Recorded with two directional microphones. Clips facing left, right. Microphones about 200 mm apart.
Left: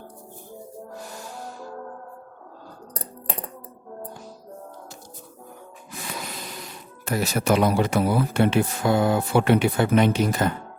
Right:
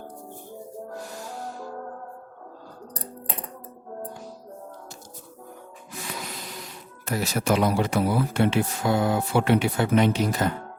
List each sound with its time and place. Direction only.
7.0 s speech: 55° left (ahead or behind)